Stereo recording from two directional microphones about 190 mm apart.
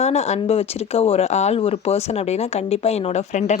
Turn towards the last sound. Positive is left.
turn(degrees=35)  # may be behind; listen again after turning